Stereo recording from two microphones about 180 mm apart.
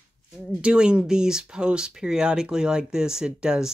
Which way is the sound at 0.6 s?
5° right (ahead or behind).